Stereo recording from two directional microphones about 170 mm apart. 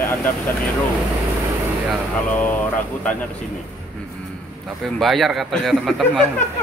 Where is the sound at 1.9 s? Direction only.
10° left (ahead or behind).